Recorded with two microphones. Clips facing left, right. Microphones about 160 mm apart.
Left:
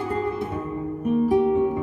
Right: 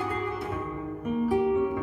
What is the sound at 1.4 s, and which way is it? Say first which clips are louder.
Music: left 4 dB; 35° left (ahead or behind).